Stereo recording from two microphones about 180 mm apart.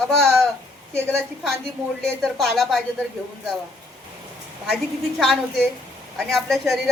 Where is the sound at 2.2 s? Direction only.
Centre (ahead or behind).